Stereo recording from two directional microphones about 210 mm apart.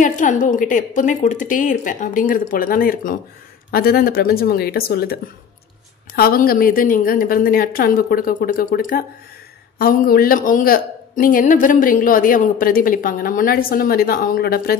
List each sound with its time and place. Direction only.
0.0 s a woman's voice: 35° left (ahead or behind)